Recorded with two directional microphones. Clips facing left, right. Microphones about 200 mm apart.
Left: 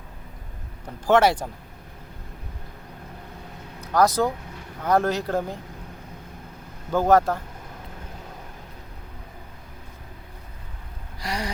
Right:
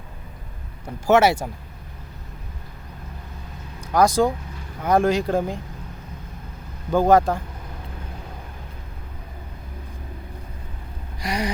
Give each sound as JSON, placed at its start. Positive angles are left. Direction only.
{"t": 1.0, "sound": "speech", "side_deg": -10}
{"t": 3.8, "sound": "speech", "side_deg": -15}
{"t": 6.9, "sound": "speech", "side_deg": -15}
{"t": 11.2, "sound": "gasp", "side_deg": -15}